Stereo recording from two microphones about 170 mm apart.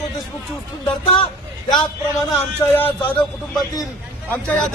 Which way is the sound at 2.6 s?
15° left (ahead or behind).